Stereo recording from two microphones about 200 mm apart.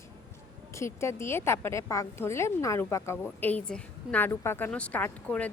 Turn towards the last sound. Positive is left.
turn(degrees=10)  # may be behind; listen again after turning